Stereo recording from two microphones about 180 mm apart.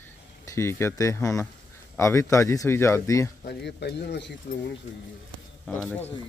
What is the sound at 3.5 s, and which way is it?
Speech, 70° left (ahead or behind).